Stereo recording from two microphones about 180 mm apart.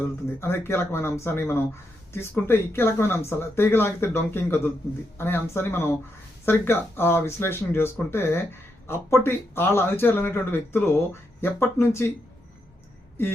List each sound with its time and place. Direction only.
0.3 s speech: 15° left (ahead or behind)